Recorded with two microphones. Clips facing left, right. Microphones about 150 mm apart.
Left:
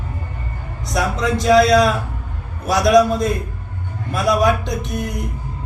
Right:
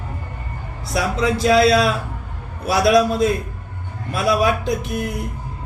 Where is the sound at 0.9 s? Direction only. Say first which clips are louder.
Even; 5° right (ahead or behind).